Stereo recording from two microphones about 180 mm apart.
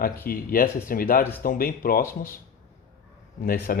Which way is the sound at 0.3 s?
55° left (ahead or behind).